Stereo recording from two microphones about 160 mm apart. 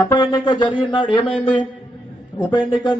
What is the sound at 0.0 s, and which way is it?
Speech, 25° left (ahead or behind).